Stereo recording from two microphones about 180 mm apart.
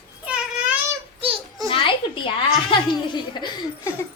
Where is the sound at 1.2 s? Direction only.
30° right (ahead or behind).